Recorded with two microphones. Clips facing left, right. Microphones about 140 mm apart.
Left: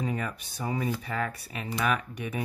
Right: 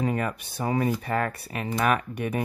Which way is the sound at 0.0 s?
60° right (ahead or behind).